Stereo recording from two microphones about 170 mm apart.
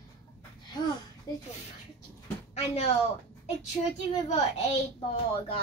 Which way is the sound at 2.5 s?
40° left (ahead or behind).